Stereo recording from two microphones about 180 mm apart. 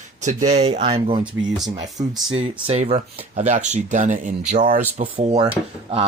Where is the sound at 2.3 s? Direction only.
35° right (ahead or behind).